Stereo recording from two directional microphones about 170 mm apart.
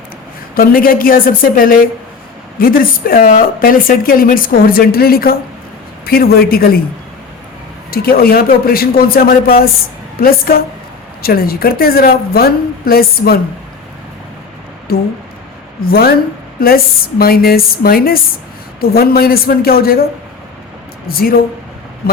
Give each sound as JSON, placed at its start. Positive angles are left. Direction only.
{"t": 0.5, "sound": "speech", "side_deg": 60}
{"t": 7.9, "sound": "speech", "side_deg": 60}
{"t": 14.9, "sound": "speech", "side_deg": 65}
{"t": 21.1, "sound": "speech", "side_deg": 60}